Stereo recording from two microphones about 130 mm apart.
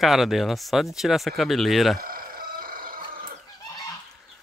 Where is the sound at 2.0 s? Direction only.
90° right.